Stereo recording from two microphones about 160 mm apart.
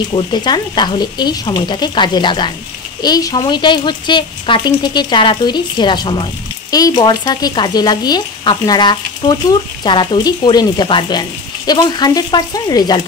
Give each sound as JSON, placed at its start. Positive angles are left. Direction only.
{"t": 0.1, "sound": "speech", "side_deg": 25}